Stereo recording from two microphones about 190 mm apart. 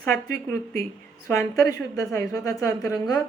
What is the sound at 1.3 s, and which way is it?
A woman's voice, 15° left (ahead or behind).